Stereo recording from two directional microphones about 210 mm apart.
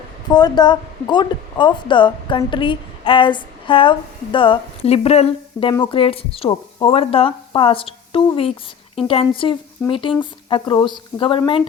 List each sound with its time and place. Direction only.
0.3 s a woman's voice: 20° left (ahead or behind)